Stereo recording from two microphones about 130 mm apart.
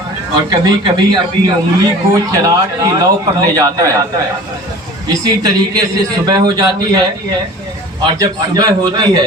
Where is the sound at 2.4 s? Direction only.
25° right (ahead or behind).